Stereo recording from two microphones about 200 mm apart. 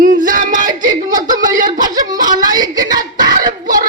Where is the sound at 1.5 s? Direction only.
40° right (ahead or behind).